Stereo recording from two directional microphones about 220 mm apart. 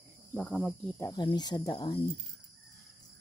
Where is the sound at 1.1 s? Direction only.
20° left (ahead or behind).